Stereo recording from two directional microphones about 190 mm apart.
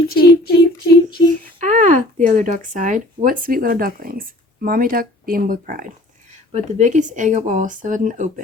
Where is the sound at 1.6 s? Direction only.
40° right (ahead or behind).